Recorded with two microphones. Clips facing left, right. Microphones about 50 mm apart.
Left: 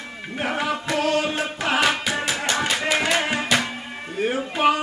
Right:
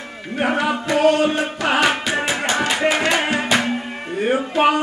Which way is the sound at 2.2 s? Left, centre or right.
Right.